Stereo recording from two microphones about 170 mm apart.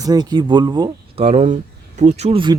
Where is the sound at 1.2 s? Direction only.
40° right (ahead or behind).